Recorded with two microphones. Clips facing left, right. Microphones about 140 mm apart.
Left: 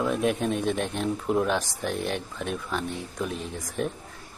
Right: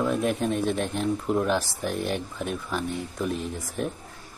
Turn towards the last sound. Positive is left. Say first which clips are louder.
# even
turn(degrees=0)  # may be behind; listen again after turning